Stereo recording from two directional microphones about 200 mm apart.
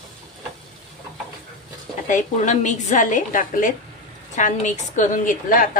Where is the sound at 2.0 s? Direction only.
40° left (ahead or behind).